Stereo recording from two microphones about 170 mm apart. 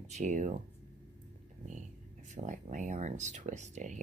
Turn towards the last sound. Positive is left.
turn(degrees=-45)  # may be behind; listen again after turning